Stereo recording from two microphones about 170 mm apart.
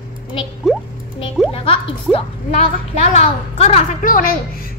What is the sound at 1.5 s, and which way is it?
A woman's voice, 35° left (ahead or behind).